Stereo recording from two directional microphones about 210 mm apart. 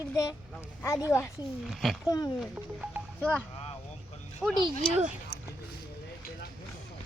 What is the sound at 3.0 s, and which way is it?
Music, 10° right (ahead or behind).